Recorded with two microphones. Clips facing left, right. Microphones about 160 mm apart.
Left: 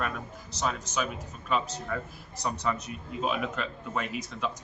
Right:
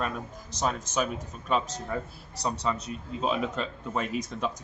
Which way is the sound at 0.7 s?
40° right (ahead or behind).